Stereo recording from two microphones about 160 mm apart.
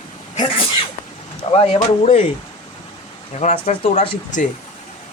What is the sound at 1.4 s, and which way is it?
Speech, 40° left (ahead or behind).